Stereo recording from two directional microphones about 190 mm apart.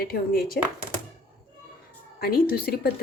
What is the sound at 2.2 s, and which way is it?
Speech, 55° left (ahead or behind).